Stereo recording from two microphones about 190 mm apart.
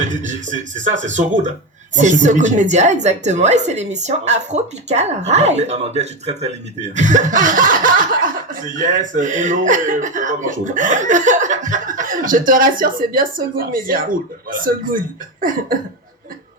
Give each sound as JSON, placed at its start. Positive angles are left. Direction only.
{"t": 0.0, "sound": "a woman's voice", "side_deg": -40}